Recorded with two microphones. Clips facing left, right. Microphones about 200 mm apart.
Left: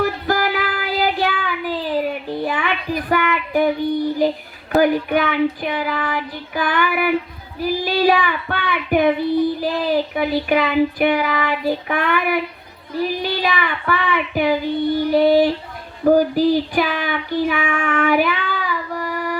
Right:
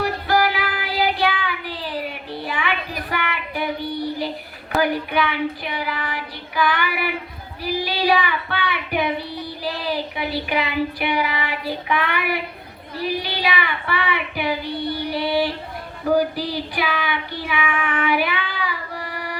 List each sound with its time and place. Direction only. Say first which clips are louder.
0.0 s child singing: left 1 dB; 45° left (ahead or behind)
4.8 s speech: left 5 dB; 45° left (ahead or behind)
16.0 s child singing: left 6 dB; 45° left (ahead or behind)